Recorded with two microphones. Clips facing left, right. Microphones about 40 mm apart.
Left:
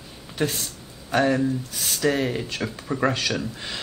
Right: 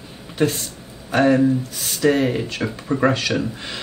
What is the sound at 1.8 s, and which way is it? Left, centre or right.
Speech, centre.